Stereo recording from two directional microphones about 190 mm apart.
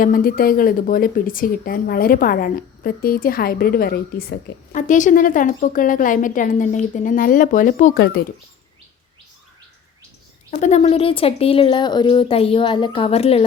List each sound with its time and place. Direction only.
0.0 s a woman's voice: 50° left (ahead or behind)
4.7 s a woman's voice: 40° left (ahead or behind)
10.5 s speech: 40° left (ahead or behind)